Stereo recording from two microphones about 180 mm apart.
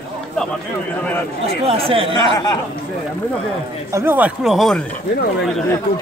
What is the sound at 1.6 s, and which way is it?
Speech, 30° right (ahead or behind).